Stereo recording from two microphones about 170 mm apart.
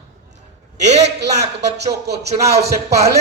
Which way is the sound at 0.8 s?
40° right (ahead or behind).